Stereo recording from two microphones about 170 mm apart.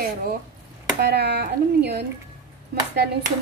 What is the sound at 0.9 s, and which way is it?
Speech, 75° right (ahead or behind).